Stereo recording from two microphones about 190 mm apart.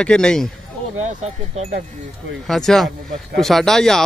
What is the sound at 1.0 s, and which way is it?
Speech, 35° right (ahead or behind).